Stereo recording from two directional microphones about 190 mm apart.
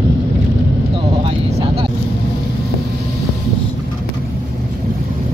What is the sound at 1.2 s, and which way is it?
Vehicle, 30° right (ahead or behind).